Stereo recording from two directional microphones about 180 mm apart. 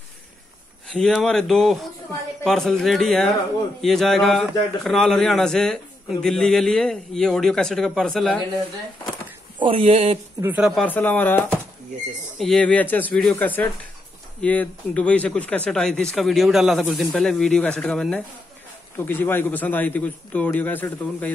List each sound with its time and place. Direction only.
0.9 s a man's voice: 5° left (ahead or behind)
9.6 s speech: 30° right (ahead or behind)
10.4 s speech: 10° right (ahead or behind)
10.7 s a man's voice: 10° left (ahead or behind)